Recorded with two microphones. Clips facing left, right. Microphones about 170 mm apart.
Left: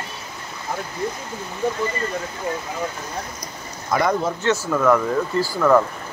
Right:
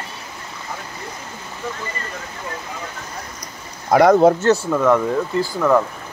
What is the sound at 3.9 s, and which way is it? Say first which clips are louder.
Speech: right 8 dB; 70° right (ahead or behind).